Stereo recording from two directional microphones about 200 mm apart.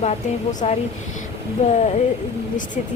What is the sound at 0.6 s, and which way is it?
Speech, 30° left (ahead or behind).